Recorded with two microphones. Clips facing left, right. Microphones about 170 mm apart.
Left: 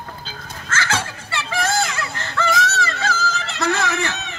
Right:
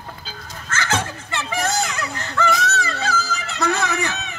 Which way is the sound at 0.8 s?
20° right (ahead or behind).